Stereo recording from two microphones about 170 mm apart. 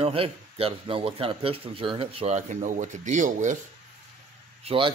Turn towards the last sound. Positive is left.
turn(degrees=-35)  # may be behind; listen again after turning